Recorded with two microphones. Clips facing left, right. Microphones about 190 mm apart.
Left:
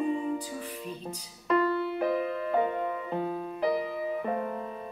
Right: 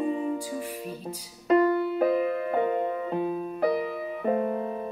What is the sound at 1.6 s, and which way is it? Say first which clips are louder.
Music: right 5 dB; 50° right (ahead or behind).